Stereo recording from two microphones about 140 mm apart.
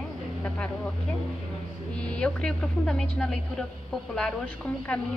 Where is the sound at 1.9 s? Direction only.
10° left (ahead or behind).